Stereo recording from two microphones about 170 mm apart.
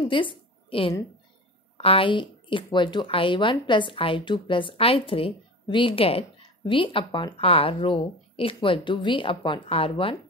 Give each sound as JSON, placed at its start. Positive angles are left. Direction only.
{"t": 0.1, "sound": "a woman's voice", "side_deg": 30}